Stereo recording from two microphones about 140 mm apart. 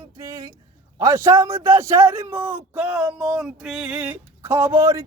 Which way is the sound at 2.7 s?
10° right (ahead or behind).